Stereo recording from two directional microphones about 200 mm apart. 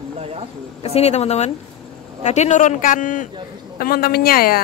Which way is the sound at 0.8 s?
30° left (ahead or behind).